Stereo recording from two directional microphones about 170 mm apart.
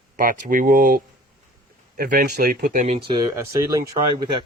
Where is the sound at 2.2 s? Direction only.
65° right (ahead or behind); by 2.9 s 50° right (ahead or behind).